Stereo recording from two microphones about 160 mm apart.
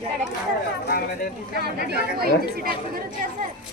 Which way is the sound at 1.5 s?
85° right.